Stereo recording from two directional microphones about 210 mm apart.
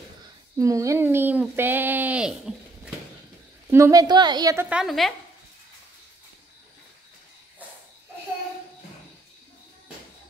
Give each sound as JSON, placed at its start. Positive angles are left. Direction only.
{"t": 0.6, "sound": "speech", "side_deg": -15}
{"t": 3.7, "sound": "a woman's voice", "side_deg": -15}
{"t": 4.6, "sound": "a woman's voice", "side_deg": -5}